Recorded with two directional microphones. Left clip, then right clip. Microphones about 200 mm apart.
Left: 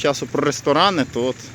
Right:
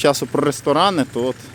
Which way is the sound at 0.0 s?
25° right (ahead or behind).